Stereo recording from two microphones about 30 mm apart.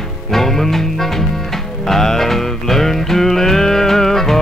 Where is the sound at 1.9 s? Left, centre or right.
Centre.